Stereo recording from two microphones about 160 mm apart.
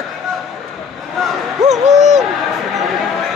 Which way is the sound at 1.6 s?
45° right (ahead or behind).